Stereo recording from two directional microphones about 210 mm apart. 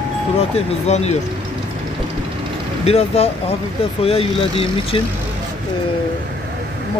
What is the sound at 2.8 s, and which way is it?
Speech, 30° left (ahead or behind).